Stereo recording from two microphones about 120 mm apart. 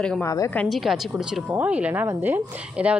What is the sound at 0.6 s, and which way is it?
A woman's voice, centre (ahead or behind).